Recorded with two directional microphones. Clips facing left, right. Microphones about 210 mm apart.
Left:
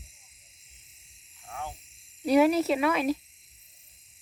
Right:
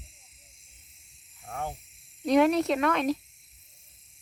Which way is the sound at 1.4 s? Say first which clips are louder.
Right 4 dB; 50° right (ahead or behind).